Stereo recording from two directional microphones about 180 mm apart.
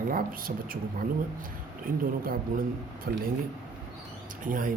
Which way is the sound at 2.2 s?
50° right (ahead or behind).